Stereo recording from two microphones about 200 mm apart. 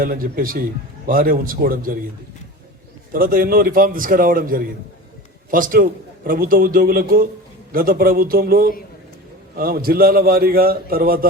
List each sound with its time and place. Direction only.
0.0 s a man's voice: 45° right (ahead or behind)
3.1 s a man's voice: 45° right (ahead or behind)